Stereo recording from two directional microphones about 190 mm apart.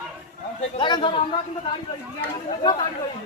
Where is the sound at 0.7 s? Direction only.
25° left (ahead or behind).